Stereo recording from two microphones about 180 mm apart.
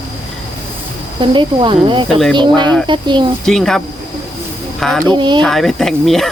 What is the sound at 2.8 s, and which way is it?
Speech, 25° right (ahead or behind).